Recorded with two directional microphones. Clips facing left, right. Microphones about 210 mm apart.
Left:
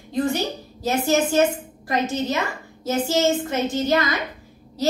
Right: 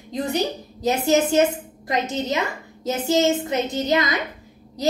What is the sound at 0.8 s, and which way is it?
A woman's voice, 20° right (ahead or behind).